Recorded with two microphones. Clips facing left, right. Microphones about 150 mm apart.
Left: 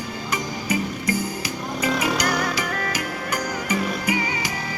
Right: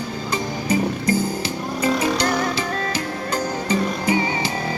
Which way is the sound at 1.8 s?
30° right (ahead or behind).